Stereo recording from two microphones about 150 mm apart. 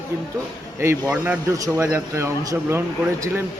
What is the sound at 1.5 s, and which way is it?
Speech, 20° right (ahead or behind).